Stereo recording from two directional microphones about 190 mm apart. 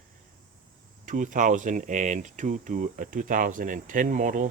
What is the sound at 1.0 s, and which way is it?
Speech, 45° right (ahead or behind).